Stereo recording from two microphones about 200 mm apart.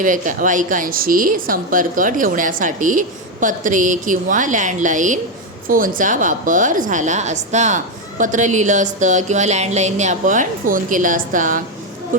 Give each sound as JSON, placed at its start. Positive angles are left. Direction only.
{"t": 0.0, "sound": "a woman's voice", "side_deg": -40}